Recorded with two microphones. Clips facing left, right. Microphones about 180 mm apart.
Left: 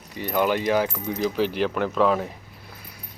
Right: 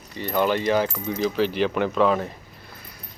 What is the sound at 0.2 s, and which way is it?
Speech, 10° left (ahead or behind).